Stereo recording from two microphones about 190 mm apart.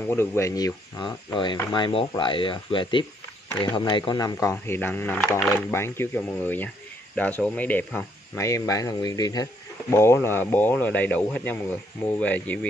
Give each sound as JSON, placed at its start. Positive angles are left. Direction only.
{"t": 0.1, "sound": "speech", "side_deg": 15}